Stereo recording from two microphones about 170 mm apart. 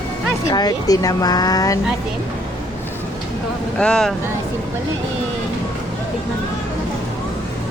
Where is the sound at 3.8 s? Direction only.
5° left (ahead or behind).